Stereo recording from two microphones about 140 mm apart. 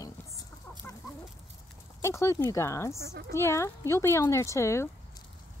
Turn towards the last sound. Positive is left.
turn(degrees=20)  # may be behind; listen again after turning